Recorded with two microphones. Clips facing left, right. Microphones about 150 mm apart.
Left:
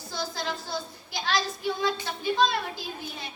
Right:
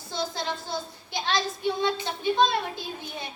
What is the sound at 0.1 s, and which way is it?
A child's voice, 25° right (ahead or behind).